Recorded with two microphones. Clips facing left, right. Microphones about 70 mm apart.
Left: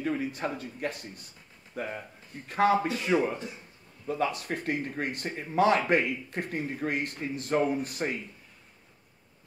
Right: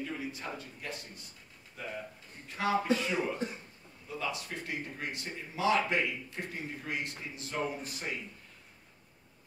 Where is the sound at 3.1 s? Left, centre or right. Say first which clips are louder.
Left 6 dB; left.